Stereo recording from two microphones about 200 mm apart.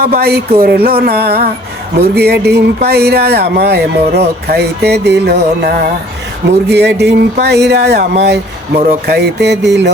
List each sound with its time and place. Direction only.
0.0 s speech: 50° right (ahead or behind)
4.4 s music: 55° right (ahead or behind)